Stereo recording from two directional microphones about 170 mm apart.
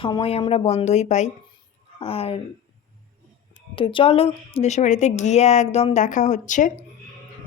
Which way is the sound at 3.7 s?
30° left (ahead or behind).